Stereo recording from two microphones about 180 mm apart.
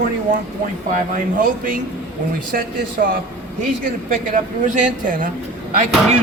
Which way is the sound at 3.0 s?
55° right (ahead or behind).